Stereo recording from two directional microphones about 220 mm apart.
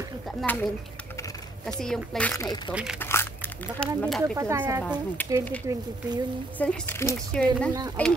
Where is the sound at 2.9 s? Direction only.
10° left (ahead or behind).